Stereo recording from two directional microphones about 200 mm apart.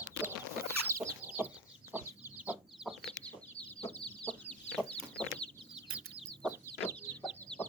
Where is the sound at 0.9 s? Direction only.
15° right (ahead or behind).